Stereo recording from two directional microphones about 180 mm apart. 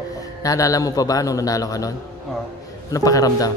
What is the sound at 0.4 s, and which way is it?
A man's voice, 20° left (ahead or behind).